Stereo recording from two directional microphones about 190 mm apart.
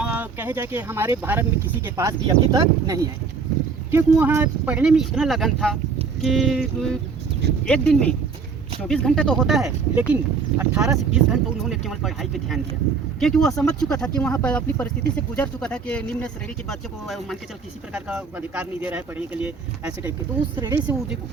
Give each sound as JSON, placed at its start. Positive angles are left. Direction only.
{"t": 0.0, "sound": "speech", "side_deg": -10}
{"t": 20.6, "sound": "speech", "side_deg": -20}